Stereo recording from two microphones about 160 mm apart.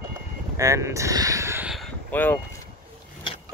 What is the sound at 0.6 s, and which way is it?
Speech, 20° right (ahead or behind).